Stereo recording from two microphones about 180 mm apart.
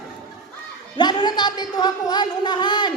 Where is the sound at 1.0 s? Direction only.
25° left (ahead or behind).